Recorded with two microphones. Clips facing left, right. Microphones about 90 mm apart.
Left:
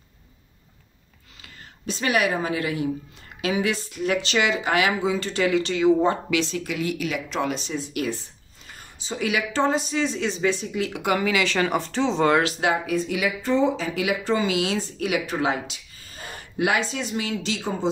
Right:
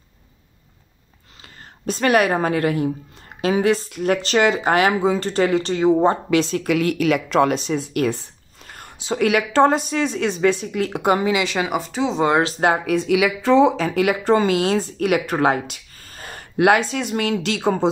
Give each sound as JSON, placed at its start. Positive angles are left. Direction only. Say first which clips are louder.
{"t": 1.9, "sound": "speech", "louder": "right 6 dB", "side_deg": -50}
{"t": 6.5, "sound": "speech", "louder": "right 7 dB", "side_deg": -60}
{"t": 8.7, "sound": "speech", "louder": "right 8 dB", "side_deg": -65}
{"t": 12.5, "sound": "speech", "louder": "right 5 dB", "side_deg": -45}
{"t": 12.8, "sound": "speech", "louder": "right 6 dB", "side_deg": -80}